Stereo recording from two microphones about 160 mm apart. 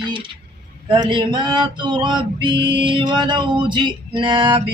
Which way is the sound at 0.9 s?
30° right (ahead or behind).